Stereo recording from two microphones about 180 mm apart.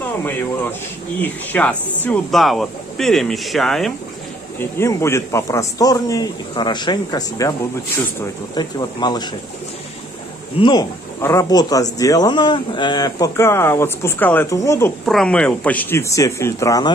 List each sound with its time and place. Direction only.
1.2 s speech: 10° left (ahead or behind)
4.6 s speech: 15° left (ahead or behind)
8.5 s speech: 20° left (ahead or behind)
10.6 s speech: 20° left (ahead or behind)
15.0 s speech: 5° left (ahead or behind)